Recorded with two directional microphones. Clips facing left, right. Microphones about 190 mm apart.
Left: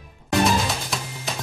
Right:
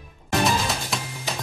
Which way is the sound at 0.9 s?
Centre (ahead or behind).